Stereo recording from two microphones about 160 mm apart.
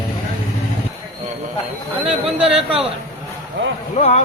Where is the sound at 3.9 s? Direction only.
40° left (ahead or behind).